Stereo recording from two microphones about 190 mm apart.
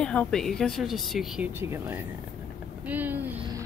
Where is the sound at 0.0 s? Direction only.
5° left (ahead or behind).